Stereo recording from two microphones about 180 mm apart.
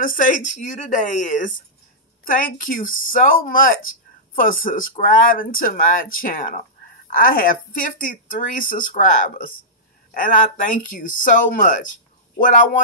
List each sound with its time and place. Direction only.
0.0 s speech: 50° left (ahead or behind)